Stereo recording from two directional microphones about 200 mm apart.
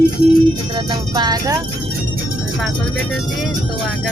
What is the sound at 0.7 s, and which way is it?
Speech, 20° right (ahead or behind).